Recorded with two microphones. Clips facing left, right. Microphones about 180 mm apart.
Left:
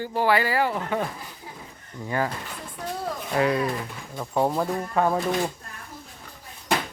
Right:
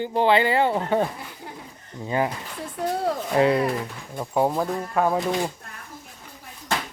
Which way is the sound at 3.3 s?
25° right (ahead or behind).